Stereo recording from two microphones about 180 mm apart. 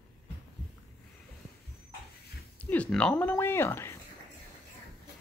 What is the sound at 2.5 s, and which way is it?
Speech, 10° left (ahead or behind).